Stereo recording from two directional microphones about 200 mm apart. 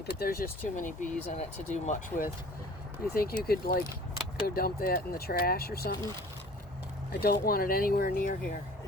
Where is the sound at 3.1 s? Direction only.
50° left (ahead or behind).